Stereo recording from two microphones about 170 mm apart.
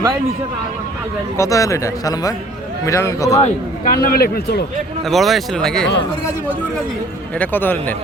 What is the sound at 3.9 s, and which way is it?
Speech, 60° left (ahead or behind).